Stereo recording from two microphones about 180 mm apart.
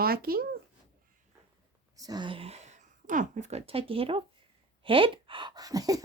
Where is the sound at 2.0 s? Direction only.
20° right (ahead or behind).